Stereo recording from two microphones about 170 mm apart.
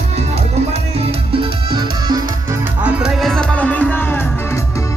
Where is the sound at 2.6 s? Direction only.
5° right (ahead or behind).